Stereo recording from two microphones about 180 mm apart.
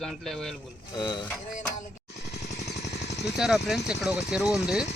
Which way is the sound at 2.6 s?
40° left (ahead or behind).